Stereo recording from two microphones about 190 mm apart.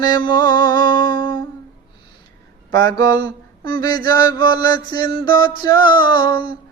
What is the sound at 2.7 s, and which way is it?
Mantra, 55° right (ahead or behind).